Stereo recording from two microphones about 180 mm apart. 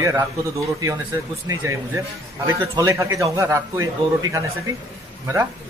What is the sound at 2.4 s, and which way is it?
A man's voice, 15° right (ahead or behind).